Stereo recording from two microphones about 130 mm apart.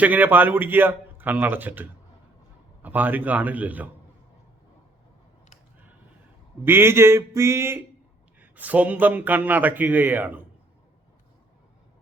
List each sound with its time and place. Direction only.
0.0 s speech: 15° right (ahead or behind)
6.7 s a sound: 20° right (ahead or behind)
8.4 s speech: 10° right (ahead or behind)